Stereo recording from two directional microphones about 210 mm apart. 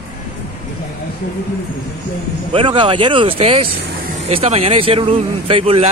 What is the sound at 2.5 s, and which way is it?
A man's voice, 25° right (ahead or behind).